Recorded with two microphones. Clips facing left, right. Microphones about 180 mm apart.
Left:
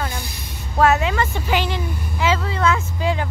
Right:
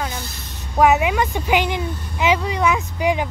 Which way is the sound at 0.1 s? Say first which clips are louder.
Even; 15° left (ahead or behind).